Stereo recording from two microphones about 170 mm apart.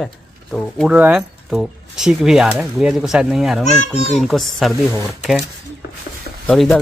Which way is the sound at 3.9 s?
40° left (ahead or behind).